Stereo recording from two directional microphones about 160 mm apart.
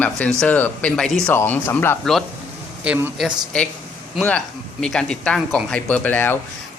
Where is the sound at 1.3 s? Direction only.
15° left (ahead or behind).